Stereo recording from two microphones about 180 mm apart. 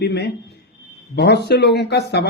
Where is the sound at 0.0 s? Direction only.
65° left (ahead or behind).